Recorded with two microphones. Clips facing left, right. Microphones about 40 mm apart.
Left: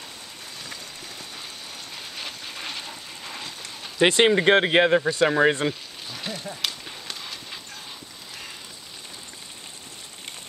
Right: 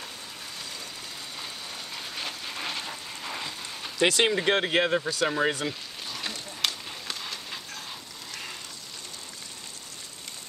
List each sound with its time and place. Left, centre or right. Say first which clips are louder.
2.0 s a sound: right 1 dB; centre
4.0 s speech: left 5 dB; left
6.0 s horse: left 3 dB; centre